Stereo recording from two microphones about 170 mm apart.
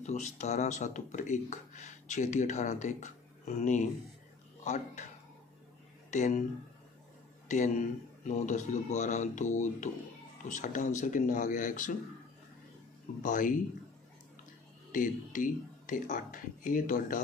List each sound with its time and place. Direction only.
0.0 s speech: 45° left (ahead or behind)
6.0 s speech: 45° left (ahead or behind)
7.4 s a man's voice: 45° left (ahead or behind)
13.2 s speech: 50° left (ahead or behind)
14.9 s speech: 50° left (ahead or behind)